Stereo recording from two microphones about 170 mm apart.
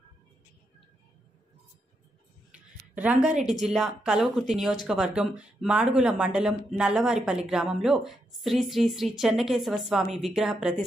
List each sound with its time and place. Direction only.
2.5 s speech: 10° right (ahead or behind)